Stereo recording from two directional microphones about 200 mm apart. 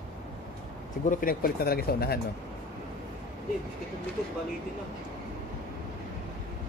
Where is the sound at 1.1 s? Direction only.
45° left (ahead or behind).